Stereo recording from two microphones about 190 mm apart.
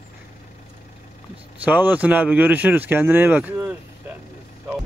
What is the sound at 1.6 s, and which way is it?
Speech, 10° right (ahead or behind).